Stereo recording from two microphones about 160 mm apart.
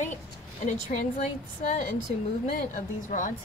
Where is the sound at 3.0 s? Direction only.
55° left (ahead or behind).